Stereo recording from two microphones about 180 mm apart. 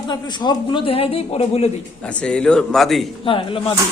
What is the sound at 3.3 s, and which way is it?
Speech, 30° left (ahead or behind).